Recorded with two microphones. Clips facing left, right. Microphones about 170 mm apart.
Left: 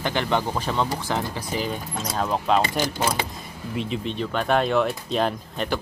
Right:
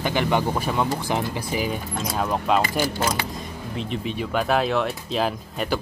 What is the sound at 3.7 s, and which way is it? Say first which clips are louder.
Speech: left 1 dB; centre (ahead or behind).